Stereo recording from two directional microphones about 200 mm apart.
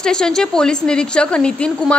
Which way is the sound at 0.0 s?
5° left (ahead or behind).